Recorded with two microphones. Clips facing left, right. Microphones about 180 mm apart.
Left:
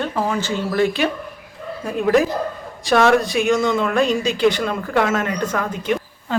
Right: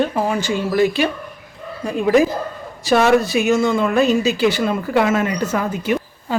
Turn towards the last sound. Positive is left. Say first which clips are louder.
# right 1 dB
turn(degrees=-5)  # may be behind; listen again after turning